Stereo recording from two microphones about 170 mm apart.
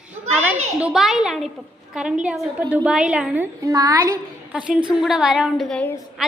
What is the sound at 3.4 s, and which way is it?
Speech, 20° right (ahead or behind).